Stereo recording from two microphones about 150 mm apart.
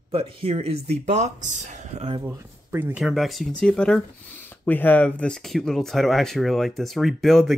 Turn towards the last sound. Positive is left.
turn(degrees=0)  # may be behind; listen again after turning